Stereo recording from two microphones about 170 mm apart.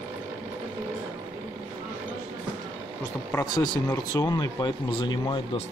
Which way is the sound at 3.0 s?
15° left (ahead or behind).